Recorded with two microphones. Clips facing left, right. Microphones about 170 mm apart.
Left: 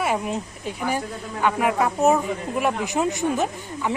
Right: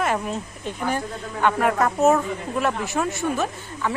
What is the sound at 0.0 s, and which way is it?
Speech, 10° left (ahead or behind).